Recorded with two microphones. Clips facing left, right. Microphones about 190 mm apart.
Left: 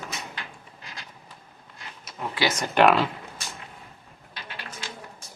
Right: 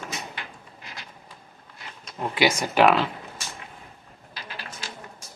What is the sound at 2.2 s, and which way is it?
Speech, 15° right (ahead or behind).